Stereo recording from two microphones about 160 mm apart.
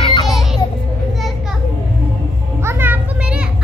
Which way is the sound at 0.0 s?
30° left (ahead or behind).